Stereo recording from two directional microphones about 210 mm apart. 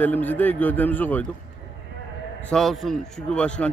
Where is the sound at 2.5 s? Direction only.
Centre (ahead or behind).